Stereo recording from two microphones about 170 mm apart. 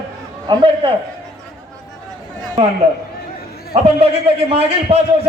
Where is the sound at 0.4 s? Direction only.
30° right (ahead or behind).